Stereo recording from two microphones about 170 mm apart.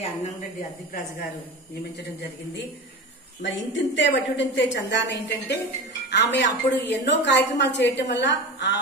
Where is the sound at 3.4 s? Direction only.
90° left.